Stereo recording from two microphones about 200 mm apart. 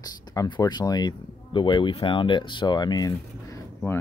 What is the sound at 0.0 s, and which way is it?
Speech, 20° left (ahead or behind).